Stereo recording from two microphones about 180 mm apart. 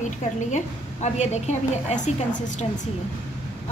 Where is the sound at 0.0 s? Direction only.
40° left (ahead or behind).